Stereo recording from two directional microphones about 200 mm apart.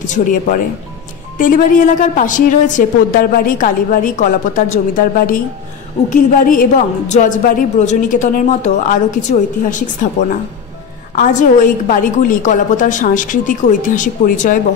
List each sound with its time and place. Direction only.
0.1 s a woman's voice: 40° left (ahead or behind)
11.1 s a woman's voice: 40° left (ahead or behind)